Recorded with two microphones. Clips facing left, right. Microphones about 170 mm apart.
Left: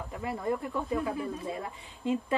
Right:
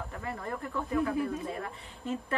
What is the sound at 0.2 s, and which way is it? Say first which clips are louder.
Speech: left 7 dB; 15° left (ahead or behind).